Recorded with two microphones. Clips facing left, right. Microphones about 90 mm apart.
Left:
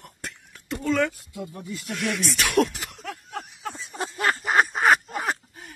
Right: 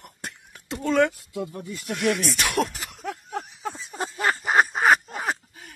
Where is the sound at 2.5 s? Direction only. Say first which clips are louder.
Left 3 dB; centre (ahead or behind).